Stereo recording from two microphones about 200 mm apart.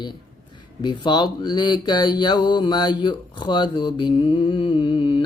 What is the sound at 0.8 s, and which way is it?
Speech, 20° left (ahead or behind).